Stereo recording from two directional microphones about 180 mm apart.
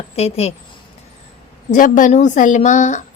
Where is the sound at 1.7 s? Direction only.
50° left (ahead or behind).